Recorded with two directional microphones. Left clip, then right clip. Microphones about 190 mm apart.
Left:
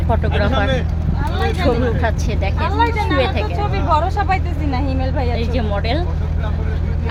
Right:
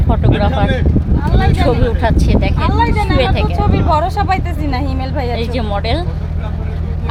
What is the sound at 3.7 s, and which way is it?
Speech, 55° right (ahead or behind).